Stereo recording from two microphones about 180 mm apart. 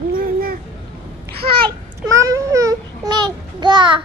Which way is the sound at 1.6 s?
20° right (ahead or behind).